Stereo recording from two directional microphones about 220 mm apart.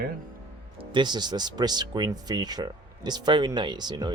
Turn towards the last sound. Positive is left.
turn(degrees=-20)  # may be behind; listen again after turning